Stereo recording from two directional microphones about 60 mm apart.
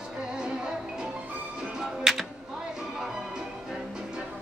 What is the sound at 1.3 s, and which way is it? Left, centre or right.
Music, right.